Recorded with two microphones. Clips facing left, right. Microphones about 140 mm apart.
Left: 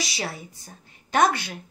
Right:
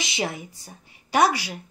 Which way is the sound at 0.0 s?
20° right (ahead or behind).